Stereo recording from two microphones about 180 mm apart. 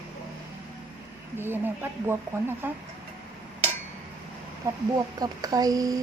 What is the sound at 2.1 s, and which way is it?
Speech, 10° right (ahead or behind).